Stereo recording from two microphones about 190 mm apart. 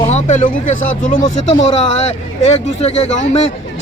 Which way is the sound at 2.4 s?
35° left (ahead or behind).